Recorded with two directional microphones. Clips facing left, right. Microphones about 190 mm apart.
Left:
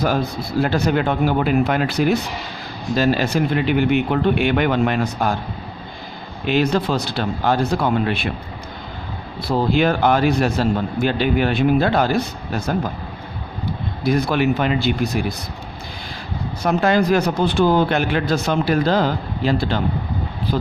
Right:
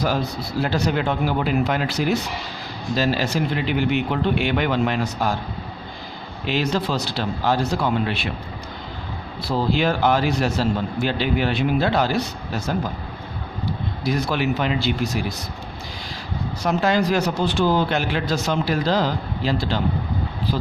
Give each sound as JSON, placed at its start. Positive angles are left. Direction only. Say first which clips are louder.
{"t": 0.0, "sound": "a man's voice", "louder": "left 3 dB", "side_deg": 55}
{"t": 6.4, "sound": "speech", "louder": "left 4 dB", "side_deg": 55}
{"t": 9.4, "sound": "a man's voice", "louder": "left 3 dB", "side_deg": 55}
{"t": 14.0, "sound": "a man's voice", "louder": "left 5 dB", "side_deg": 55}
{"t": 16.6, "sound": "speech", "louder": "left 3 dB", "side_deg": 55}